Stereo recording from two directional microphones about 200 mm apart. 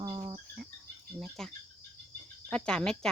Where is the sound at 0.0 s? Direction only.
20° right (ahead or behind).